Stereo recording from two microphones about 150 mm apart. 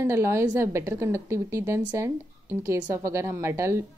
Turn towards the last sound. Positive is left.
turn(degrees=-20)  # may be behind; listen again after turning